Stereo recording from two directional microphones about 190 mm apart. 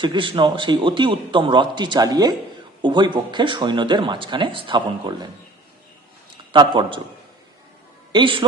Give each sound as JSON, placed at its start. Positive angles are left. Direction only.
{"t": 0.0, "sound": "speech", "side_deg": -25}
{"t": 6.3, "sound": "a man's voice", "side_deg": -25}
{"t": 8.1, "sound": "speech", "side_deg": -25}